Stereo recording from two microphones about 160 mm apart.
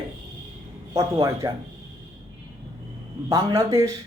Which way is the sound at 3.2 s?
20° right (ahead or behind).